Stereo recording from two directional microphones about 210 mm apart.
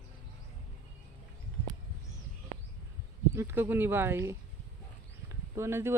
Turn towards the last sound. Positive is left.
turn(degrees=-10)  # may be behind; listen again after turning